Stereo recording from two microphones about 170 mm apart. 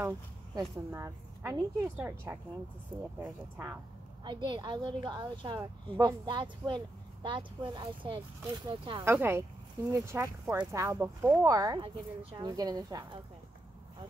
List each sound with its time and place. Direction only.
0.6 s speech: 15° right (ahead or behind)
4.2 s a woman's voice: 25° right (ahead or behind)
9.0 s a woman's voice: 15° right (ahead or behind)